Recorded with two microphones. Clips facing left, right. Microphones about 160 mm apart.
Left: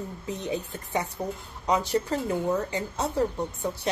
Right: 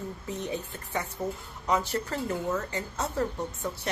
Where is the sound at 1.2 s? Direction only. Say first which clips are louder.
Left 1 dB; 10° left (ahead or behind).